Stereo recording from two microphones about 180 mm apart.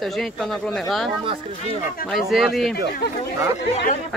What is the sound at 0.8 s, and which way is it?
Speech, centre (ahead or behind).